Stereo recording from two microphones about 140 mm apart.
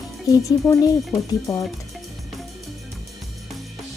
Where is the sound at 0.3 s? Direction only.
25° left (ahead or behind).